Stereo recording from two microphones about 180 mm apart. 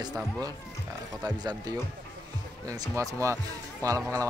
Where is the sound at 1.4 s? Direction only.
20° right (ahead or behind).